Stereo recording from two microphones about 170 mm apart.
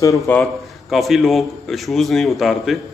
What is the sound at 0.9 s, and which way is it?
A man's voice, centre (ahead or behind).